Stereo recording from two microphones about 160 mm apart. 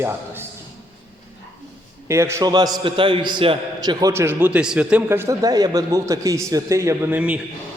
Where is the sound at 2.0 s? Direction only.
20° right (ahead or behind).